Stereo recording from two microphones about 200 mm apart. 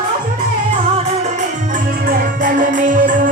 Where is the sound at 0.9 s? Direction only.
35° right (ahead or behind).